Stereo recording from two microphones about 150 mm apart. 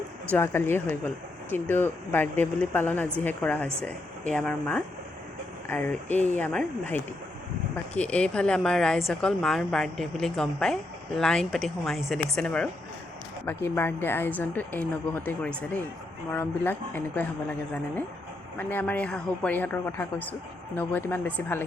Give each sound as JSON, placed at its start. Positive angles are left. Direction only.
{"t": 0.3, "sound": "a woman's voice", "side_deg": 15}
{"t": 18.5, "sound": "a woman's voice", "side_deg": 15}